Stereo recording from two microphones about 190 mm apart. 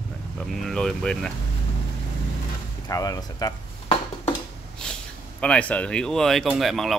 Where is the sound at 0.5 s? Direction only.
Centre (ahead or behind).